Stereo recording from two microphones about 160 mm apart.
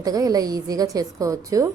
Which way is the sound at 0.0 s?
25° right (ahead or behind).